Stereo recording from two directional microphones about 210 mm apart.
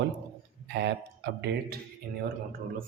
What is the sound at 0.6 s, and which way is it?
Speech, 55° right (ahead or behind).